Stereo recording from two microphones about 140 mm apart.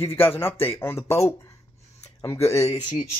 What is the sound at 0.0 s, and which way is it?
Speech, 15° left (ahead or behind).